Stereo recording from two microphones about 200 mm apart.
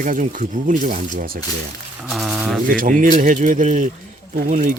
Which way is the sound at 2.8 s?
45° right (ahead or behind).